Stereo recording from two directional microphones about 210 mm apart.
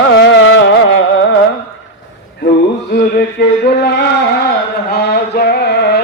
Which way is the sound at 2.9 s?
45° left (ahead or behind).